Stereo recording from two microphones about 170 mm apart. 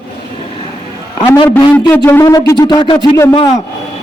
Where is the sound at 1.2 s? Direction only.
30° left (ahead or behind).